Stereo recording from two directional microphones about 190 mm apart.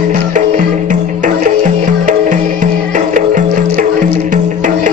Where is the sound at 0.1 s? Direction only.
40° right (ahead or behind).